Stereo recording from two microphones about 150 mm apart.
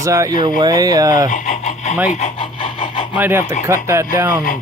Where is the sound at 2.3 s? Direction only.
35° left (ahead or behind).